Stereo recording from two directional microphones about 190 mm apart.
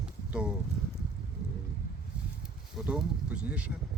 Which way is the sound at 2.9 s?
5° right (ahead or behind).